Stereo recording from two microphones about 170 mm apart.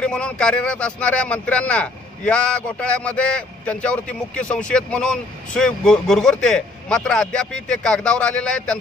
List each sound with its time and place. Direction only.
0.0 s a man's voice: 5° left (ahead or behind)